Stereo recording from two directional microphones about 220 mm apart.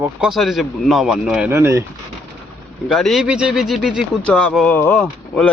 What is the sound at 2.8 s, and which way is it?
Speech, centre (ahead or behind).